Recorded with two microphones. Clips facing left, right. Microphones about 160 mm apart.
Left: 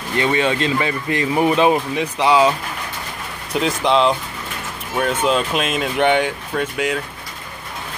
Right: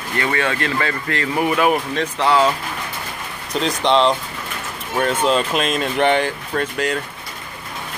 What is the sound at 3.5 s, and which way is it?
Speech, 5° left (ahead or behind).